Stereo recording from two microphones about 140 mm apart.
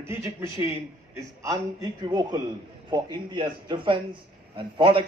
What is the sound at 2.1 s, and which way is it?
A man's voice, 30° right (ahead or behind).